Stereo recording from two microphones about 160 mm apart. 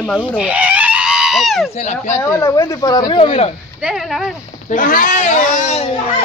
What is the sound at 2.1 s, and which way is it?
Speech, 20° left (ahead or behind).